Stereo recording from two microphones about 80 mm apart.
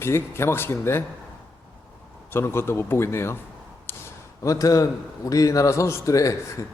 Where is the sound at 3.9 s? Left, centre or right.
Left.